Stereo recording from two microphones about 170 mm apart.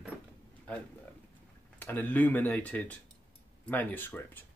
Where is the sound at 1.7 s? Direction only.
10° left (ahead or behind).